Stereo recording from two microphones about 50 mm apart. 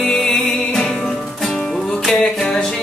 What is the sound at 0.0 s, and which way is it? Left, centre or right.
Music, centre.